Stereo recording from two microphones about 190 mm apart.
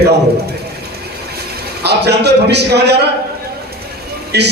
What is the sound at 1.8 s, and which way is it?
A man's voice, 60° right (ahead or behind).